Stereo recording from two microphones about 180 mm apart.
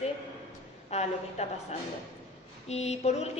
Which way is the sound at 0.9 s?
40° left (ahead or behind).